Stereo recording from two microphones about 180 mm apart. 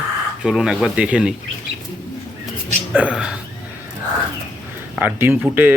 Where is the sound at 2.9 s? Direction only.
5° right (ahead or behind).